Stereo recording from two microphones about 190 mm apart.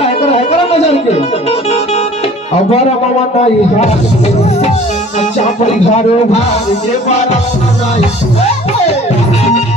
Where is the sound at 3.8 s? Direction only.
35° left (ahead or behind).